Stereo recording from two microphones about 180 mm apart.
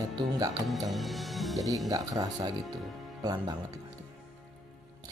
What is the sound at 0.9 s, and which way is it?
Music, centre (ahead or behind).